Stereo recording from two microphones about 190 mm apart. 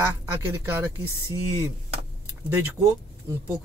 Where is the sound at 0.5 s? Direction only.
10° right (ahead or behind).